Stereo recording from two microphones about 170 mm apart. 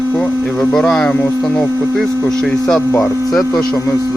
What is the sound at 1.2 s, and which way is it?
Hum, 15° left (ahead or behind).